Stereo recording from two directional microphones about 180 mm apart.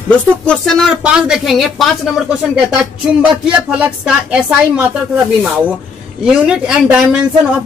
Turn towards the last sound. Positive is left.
turn(degrees=-5)  # may be behind; listen again after turning